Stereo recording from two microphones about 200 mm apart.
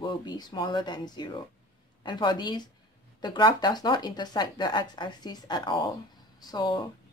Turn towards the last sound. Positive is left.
turn(degrees=20)  # may be behind; listen again after turning